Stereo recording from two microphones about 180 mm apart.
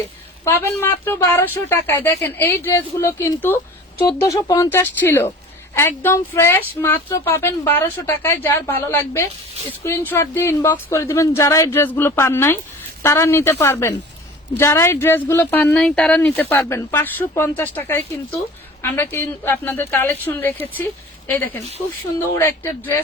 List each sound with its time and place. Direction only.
0.4 s speech: 15° left (ahead or behind)